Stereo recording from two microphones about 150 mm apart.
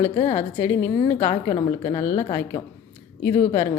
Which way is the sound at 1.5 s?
30° left (ahead or behind).